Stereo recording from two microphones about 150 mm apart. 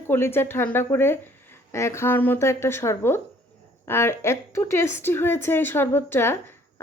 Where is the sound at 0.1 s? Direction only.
15° left (ahead or behind).